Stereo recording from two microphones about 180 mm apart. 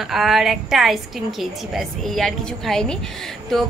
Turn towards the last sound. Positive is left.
turn(degrees=0)  # may be behind; listen again after turning